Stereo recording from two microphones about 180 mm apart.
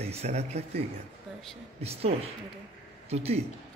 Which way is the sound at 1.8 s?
35° right (ahead or behind).